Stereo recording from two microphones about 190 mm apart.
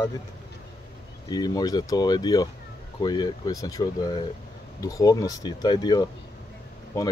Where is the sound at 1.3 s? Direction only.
20° left (ahead or behind).